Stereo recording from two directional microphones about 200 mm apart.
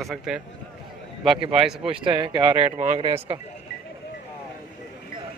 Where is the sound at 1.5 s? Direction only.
Centre (ahead or behind).